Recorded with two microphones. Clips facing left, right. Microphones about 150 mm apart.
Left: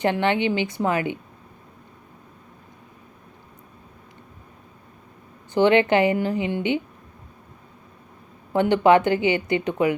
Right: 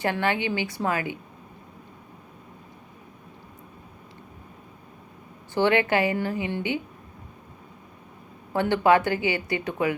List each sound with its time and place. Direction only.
0.0 s speech: 20° left (ahead or behind)
5.5 s speech: 20° left (ahead or behind)
8.5 s speech: 20° left (ahead or behind)